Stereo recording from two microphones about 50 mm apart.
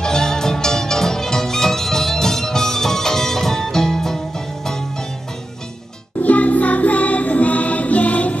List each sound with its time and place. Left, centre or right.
0.0 s music: centre
6.2 s music: left